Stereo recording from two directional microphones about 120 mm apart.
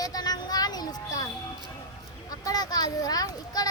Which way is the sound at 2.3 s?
30° left (ahead or behind).